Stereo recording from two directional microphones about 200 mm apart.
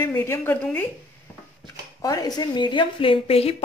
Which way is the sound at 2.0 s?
20° left (ahead or behind).